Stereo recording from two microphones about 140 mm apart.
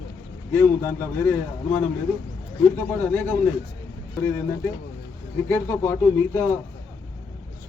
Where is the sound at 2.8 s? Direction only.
15° left (ahead or behind).